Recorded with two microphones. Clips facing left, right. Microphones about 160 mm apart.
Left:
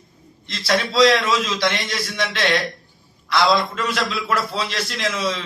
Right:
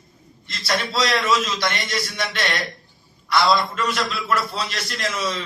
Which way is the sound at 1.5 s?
90° left.